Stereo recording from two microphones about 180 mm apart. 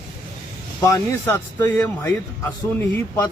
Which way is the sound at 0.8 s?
15° left (ahead or behind).